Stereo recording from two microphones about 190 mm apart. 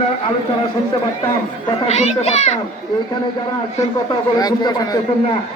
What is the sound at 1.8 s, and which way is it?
Speech, 35° left (ahead or behind).